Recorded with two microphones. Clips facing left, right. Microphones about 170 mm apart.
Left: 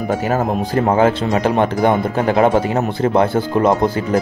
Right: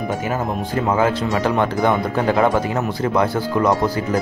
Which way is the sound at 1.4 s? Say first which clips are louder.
Left 3 dB; 20° left (ahead or behind).